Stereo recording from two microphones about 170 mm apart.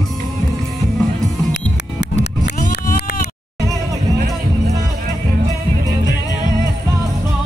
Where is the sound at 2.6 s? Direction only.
55° left (ahead or behind).